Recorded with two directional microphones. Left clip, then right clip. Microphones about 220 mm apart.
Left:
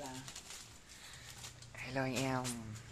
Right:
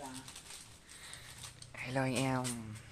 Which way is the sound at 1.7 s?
20° right (ahead or behind).